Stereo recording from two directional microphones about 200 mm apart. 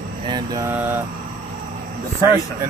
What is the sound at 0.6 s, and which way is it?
Speech, 10° right (ahead or behind).